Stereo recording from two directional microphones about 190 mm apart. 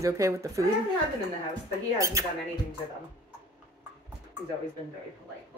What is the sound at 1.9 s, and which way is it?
Speech, 15° right (ahead or behind).